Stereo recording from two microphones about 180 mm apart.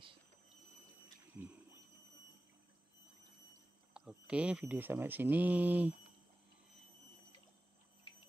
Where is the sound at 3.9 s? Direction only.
5° right (ahead or behind).